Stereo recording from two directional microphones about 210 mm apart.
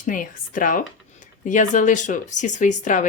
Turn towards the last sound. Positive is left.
turn(degrees=35)  # may be behind; listen again after turning